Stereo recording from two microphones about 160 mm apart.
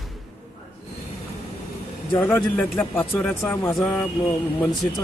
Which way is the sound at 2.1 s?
10° left (ahead or behind).